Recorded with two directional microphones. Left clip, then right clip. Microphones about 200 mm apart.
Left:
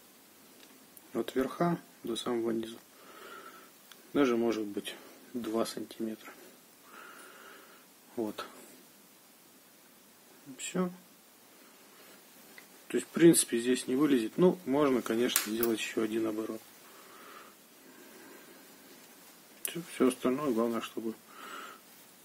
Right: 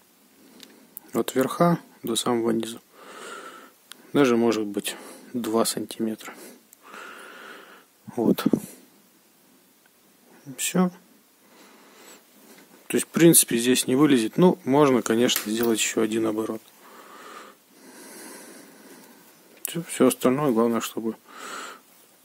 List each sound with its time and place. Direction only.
1.1 s speech: 60° right (ahead or behind)
6.9 s a sound: 60° right (ahead or behind)
10.5 s speech: 60° right (ahead or behind)
12.8 s speech: 60° right (ahead or behind)
19.6 s speech: 60° right (ahead or behind)